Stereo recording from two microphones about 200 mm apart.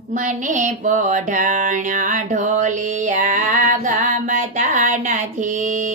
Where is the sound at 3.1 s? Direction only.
40° right (ahead or behind).